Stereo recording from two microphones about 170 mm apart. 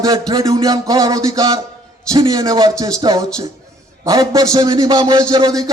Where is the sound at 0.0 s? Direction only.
20° right (ahead or behind).